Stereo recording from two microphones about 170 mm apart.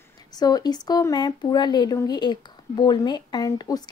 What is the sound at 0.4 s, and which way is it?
Speech, 25° left (ahead or behind).